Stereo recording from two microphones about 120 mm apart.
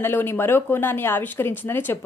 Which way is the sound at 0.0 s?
20° left (ahead or behind).